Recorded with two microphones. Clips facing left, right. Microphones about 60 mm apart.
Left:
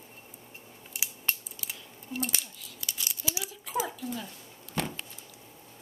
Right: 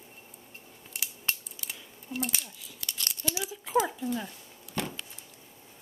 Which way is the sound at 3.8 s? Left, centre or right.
Centre.